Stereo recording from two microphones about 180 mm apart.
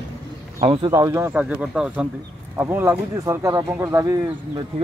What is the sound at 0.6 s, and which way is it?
Speech, 35° right (ahead or behind).